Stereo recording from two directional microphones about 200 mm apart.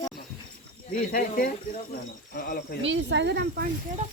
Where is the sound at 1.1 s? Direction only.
45° left (ahead or behind).